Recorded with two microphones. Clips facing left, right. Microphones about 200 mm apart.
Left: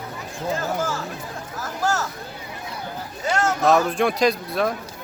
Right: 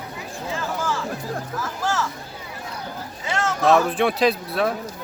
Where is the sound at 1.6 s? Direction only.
40° left (ahead or behind).